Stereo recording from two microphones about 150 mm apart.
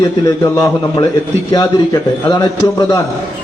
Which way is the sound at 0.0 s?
25° left (ahead or behind).